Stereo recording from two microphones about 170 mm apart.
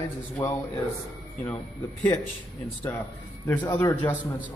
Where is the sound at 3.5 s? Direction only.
20° left (ahead or behind).